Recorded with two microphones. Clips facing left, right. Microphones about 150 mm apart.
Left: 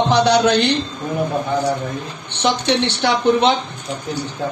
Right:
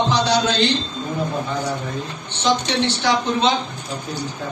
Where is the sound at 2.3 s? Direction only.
60° left (ahead or behind).